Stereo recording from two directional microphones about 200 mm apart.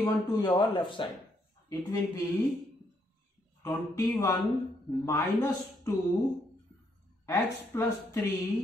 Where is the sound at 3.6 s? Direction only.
15° left (ahead or behind).